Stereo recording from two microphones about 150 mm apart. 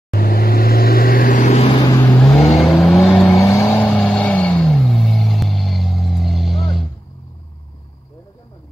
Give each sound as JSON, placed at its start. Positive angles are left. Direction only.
{"t": 0.1, "sound": "vehicle", "side_deg": 80}
{"t": 1.6, "sound": "vehicle", "side_deg": 30}
{"t": 2.0, "sound": "vehicle", "side_deg": 15}
{"t": 2.4, "sound": "vehicle", "side_deg": 0}
{"t": 3.3, "sound": "vehicle", "side_deg": 20}